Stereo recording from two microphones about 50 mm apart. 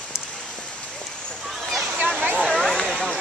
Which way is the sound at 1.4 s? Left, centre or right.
Centre.